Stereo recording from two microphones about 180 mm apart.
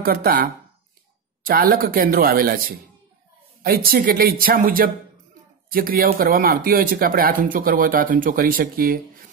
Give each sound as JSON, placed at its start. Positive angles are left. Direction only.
{"t": 0.0, "sound": "speech", "side_deg": -55}
{"t": 3.6, "sound": "speech", "side_deg": -55}